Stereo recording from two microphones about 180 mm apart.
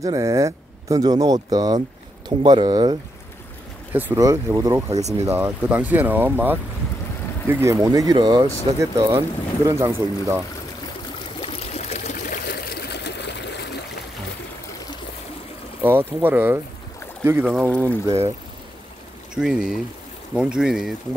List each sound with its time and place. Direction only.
0.0 s speech: 20° right (ahead or behind)
3.9 s speech: 15° right (ahead or behind)
11.4 s pour: 35° left (ahead or behind)
12.4 s trickle: 60° left (ahead or behind)
15.8 s speech: 10° right (ahead or behind)
19.3 s speech: 5° right (ahead or behind)